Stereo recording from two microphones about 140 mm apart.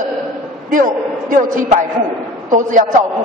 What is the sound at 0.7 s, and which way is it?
A man's voice, 70° right (ahead or behind).